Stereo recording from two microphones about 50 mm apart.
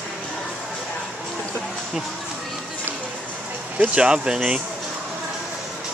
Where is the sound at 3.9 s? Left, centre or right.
Centre.